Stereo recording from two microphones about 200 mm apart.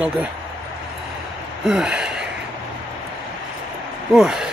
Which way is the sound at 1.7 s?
5° right (ahead or behind).